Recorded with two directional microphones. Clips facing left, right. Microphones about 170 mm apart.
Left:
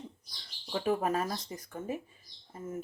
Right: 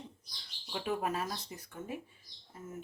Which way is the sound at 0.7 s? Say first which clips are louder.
Left 5 dB; 45° left (ahead or behind).